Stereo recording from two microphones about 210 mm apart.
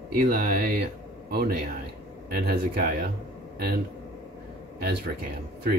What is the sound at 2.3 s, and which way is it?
Speech, 50° right (ahead or behind).